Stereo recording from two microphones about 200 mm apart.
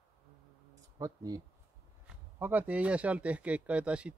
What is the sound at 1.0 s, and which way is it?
Speech, 20° right (ahead or behind).